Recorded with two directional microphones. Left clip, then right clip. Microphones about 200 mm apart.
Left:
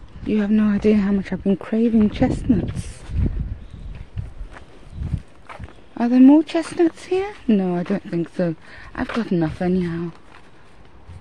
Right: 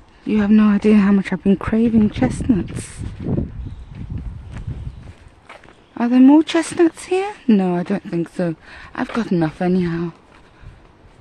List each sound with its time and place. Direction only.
0.3 s speech: 15° right (ahead or behind)
2.1 s speech: 10° right (ahead or behind)
4.6 s a sound: 30° left (ahead or behind)
5.5 s walk: 25° left (ahead or behind)
5.9 s speech: 10° right (ahead or behind)
6.9 s speech: 10° right (ahead or behind)